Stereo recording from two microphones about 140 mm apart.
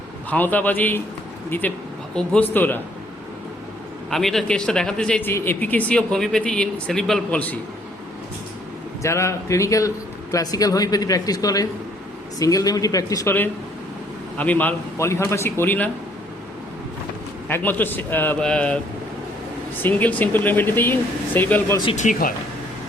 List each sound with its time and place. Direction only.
0.3 s speech: 10° left (ahead or behind)
4.1 s speech: centre (ahead or behind)
9.0 s speech: 20° left (ahead or behind)
17.5 s speech: 10° left (ahead or behind)
19.8 s speech: 10° left (ahead or behind)
21.9 s speech: 75° left (ahead or behind)